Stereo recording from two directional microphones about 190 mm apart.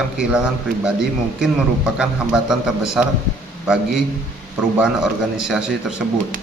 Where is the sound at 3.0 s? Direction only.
5° right (ahead or behind).